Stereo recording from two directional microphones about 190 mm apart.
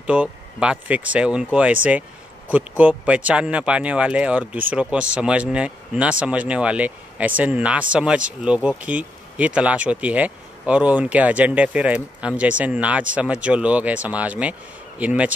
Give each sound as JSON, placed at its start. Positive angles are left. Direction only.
{"t": 0.0, "sound": "speech", "side_deg": -5}